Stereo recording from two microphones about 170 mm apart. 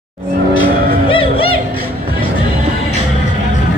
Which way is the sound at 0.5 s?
30° left (ahead or behind).